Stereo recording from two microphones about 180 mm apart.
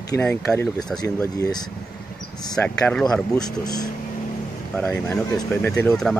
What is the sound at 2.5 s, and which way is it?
Speech, 5° left (ahead or behind).